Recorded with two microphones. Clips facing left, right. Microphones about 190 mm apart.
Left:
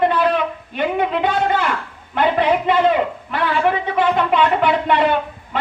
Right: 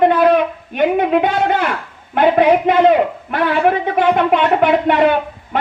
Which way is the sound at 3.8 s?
55° right (ahead or behind).